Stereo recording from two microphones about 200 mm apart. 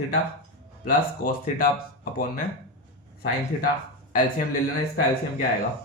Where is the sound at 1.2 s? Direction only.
50° left (ahead or behind).